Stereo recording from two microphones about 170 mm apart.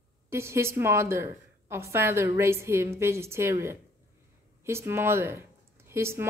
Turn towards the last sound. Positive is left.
turn(degrees=-15)  # may be behind; listen again after turning